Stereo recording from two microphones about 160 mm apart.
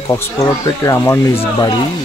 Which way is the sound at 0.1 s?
20° left (ahead or behind).